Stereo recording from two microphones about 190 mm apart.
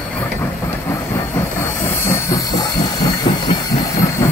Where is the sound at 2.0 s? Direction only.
15° left (ahead or behind).